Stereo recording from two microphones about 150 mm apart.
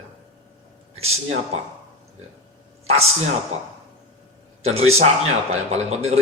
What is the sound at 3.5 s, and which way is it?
A man's voice, 45° right (ahead or behind).